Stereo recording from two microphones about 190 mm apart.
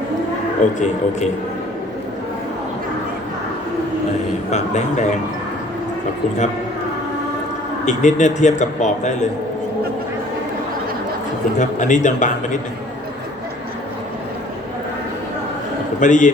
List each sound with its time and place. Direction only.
0.6 s speech: 40° left (ahead or behind)
4.5 s speech: 40° left (ahead or behind)
7.9 s speech: 40° left (ahead or behind)
11.5 s speech: 40° left (ahead or behind)
16.0 s speech: 40° left (ahead or behind)